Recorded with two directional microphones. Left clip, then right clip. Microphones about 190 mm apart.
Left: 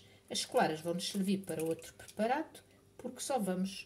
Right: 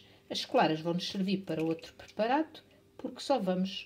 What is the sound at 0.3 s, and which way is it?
Speech, 25° right (ahead or behind).